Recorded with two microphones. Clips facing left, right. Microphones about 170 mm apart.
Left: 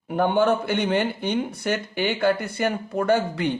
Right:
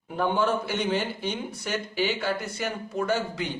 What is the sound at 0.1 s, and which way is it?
A man's voice, 65° left (ahead or behind).